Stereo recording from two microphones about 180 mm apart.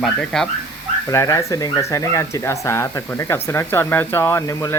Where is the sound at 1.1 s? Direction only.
15° left (ahead or behind).